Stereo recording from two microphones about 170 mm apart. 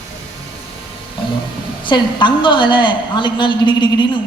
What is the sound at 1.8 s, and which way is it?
A woman's voice, 30° left (ahead or behind).